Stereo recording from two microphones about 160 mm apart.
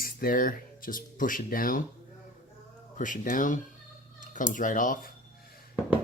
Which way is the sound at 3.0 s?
55° left (ahead or behind).